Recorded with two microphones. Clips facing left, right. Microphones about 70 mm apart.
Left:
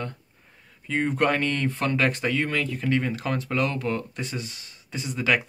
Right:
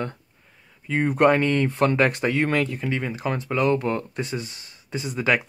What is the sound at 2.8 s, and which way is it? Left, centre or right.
Speech, centre.